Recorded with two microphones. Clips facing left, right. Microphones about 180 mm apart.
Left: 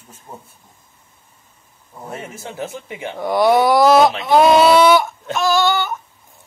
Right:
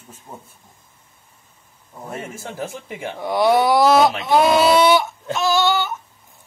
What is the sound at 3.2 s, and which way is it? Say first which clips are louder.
Speech: left 2 dB; 50° left (ahead or behind).